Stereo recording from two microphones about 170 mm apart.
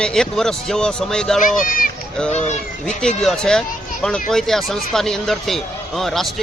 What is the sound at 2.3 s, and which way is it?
Speech, 40° left (ahead or behind).